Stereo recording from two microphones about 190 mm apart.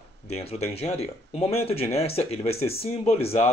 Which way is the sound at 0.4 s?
35° left (ahead or behind).